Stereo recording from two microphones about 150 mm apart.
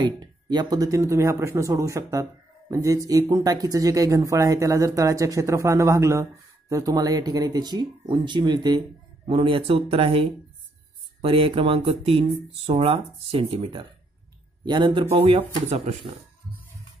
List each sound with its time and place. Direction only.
0.0 s speech: 30° right (ahead or behind)
15.1 s speech: 40° right (ahead or behind)